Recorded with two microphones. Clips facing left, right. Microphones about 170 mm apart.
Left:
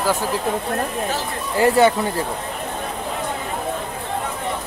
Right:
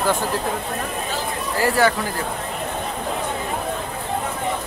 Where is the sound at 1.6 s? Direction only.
25° left (ahead or behind).